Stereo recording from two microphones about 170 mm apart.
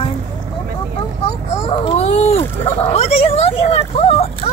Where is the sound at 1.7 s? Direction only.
40° left (ahead or behind).